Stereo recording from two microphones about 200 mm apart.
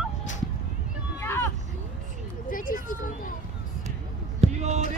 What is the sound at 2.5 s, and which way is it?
Speech, 45° left (ahead or behind).